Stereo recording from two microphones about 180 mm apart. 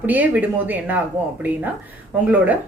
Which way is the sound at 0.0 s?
10° right (ahead or behind).